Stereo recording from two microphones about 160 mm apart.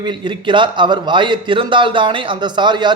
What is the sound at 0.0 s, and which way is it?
A man's voice, 30° right (ahead or behind).